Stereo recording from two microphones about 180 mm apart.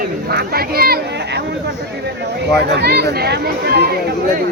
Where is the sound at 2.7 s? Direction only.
65° right (ahead or behind).